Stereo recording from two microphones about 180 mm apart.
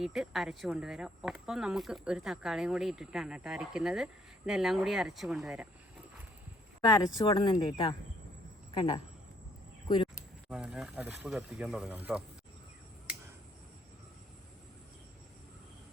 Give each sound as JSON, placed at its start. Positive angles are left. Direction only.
{"t": 0.0, "sound": "speech", "side_deg": 0}
{"t": 6.8, "sound": "speech", "side_deg": 20}
{"t": 10.5, "sound": "speech", "side_deg": -5}